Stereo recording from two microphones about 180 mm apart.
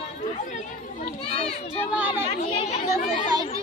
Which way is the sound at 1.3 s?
35° left (ahead or behind).